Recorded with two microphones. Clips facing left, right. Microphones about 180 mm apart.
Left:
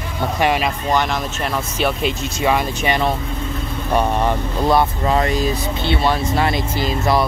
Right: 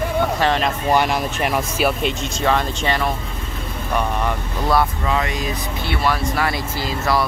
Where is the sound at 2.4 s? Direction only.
15° left (ahead or behind).